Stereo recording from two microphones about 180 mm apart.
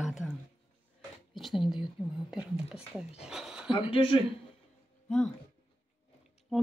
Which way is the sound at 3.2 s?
5° right (ahead or behind).